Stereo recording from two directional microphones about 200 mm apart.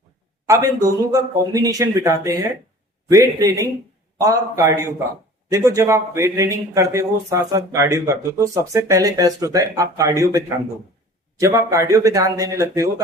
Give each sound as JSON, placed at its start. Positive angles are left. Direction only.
{"t": 0.4, "sound": "a man's voice", "side_deg": -15}